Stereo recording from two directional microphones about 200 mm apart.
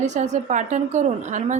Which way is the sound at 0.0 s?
35° right (ahead or behind).